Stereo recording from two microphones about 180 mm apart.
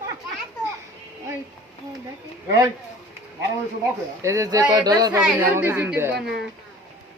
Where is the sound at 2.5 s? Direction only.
20° right (ahead or behind).